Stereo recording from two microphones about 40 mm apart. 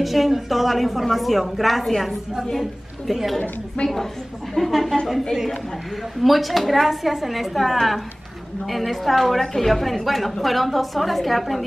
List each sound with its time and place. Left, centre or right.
0.0 s a woman's voice: centre
3.3 s a woman's voice: left
4.6 s a woman's voice: centre
6.2 s a woman's voice: centre